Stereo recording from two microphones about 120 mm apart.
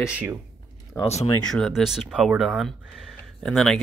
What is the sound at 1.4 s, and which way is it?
Speech, 5° left (ahead or behind).